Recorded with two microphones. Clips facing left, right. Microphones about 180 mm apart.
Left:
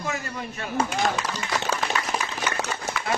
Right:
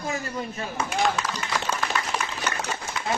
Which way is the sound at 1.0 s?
40° left (ahead or behind).